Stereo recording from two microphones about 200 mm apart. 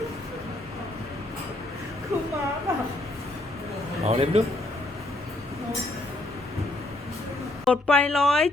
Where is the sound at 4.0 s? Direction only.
30° right (ahead or behind).